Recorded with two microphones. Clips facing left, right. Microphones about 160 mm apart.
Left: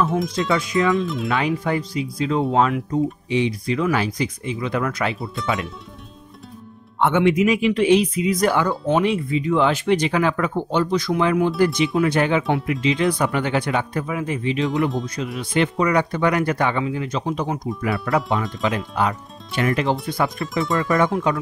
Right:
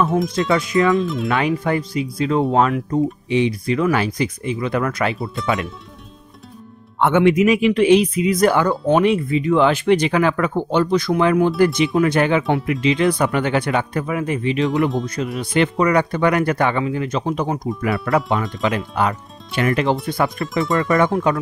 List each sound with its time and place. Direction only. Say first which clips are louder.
0.2 s speech: right 3 dB; centre (ahead or behind)
1.3 s speech: right 2 dB; 55° right (ahead or behind)
7.0 s speech: right 3 dB; 55° right (ahead or behind)
15.2 s speech: right 3 dB; 50° right (ahead or behind)
15.5 s speech: right 2 dB; 65° right (ahead or behind)